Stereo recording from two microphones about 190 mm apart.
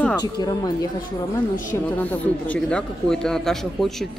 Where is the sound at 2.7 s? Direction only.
5° left (ahead or behind).